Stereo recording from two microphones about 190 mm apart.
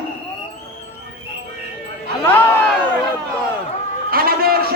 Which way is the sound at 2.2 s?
10° left (ahead or behind).